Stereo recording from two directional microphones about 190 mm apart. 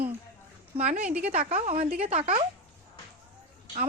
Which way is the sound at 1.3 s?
50° right (ahead or behind).